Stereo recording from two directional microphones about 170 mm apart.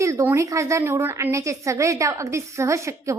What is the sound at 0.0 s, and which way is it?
A woman's voice, 15° right (ahead or behind).